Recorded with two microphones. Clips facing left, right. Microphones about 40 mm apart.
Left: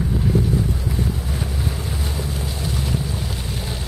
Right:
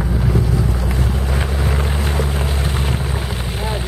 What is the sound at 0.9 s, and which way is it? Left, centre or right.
Boat, right.